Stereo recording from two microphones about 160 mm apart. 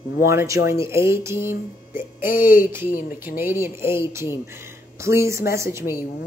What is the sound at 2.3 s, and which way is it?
Speech, 60° left (ahead or behind).